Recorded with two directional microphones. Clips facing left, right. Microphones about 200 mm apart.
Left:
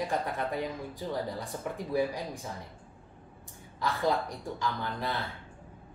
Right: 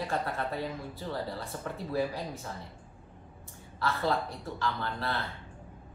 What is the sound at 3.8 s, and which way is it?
A woman's voice, 15° left (ahead or behind).